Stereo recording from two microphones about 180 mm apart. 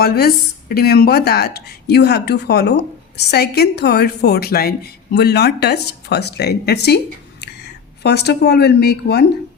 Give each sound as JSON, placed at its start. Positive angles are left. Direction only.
{"t": 0.0, "sound": "speech", "side_deg": 60}
{"t": 8.0, "sound": "speech", "side_deg": 65}